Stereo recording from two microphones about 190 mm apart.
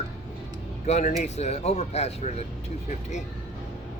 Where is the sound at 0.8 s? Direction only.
35° left (ahead or behind).